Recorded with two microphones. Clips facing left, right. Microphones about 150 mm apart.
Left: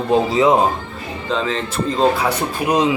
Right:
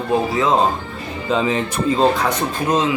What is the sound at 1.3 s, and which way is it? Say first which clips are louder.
Speech: right 2 dB; 10° right (ahead or behind).